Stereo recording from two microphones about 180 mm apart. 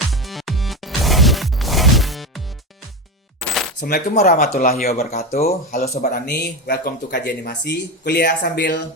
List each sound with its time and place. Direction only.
0.1 s music: centre (ahead or behind)
3.4 s coin: 5° left (ahead or behind)
3.8 s coin: 50° left (ahead or behind)
4.6 s speech: 55° left (ahead or behind)
5.5 s speech: 40° left (ahead or behind)
5.9 s speech: 55° left (ahead or behind)